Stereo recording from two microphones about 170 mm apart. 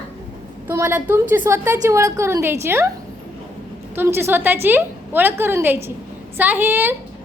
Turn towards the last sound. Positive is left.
turn(degrees=-10)  # may be behind; listen again after turning